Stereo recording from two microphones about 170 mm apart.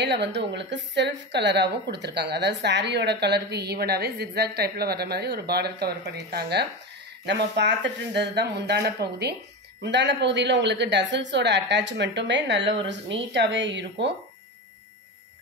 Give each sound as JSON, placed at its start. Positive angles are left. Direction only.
{"t": 0.0, "sound": "a woman's voice", "side_deg": -90}
{"t": 7.2, "sound": "speech", "side_deg": -85}